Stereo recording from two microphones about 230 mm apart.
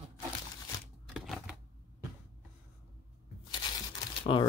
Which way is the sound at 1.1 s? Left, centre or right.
Centre.